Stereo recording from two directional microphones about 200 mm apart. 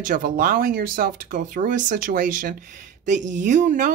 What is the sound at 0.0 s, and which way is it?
Speech, 40° right (ahead or behind).